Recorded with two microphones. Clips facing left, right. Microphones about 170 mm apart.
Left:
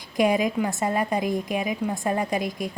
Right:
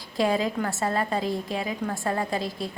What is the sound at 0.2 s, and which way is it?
Speech, 15° left (ahead or behind).